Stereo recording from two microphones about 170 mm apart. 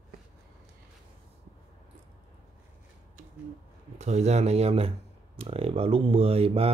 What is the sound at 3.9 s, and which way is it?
Speech, 40° right (ahead or behind).